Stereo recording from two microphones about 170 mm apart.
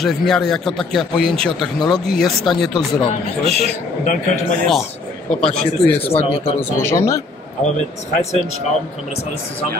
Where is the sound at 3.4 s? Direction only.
40° right (ahead or behind).